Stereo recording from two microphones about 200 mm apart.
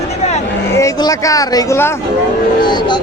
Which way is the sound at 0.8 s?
15° left (ahead or behind).